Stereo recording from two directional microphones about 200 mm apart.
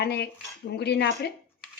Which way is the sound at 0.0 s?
55° left (ahead or behind).